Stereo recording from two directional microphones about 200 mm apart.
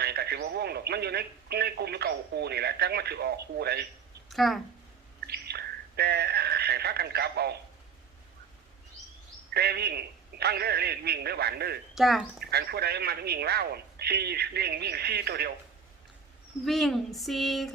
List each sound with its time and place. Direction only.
0.0 s speech: 55° right (ahead or behind)
4.3 s speech: centre (ahead or behind)
5.2 s bird: 55° right (ahead or behind)
9.5 s speech: 55° right (ahead or behind)
11.9 s speech: centre (ahead or behind)
12.4 s speech: 55° right (ahead or behind)
16.6 s speech: centre (ahead or behind)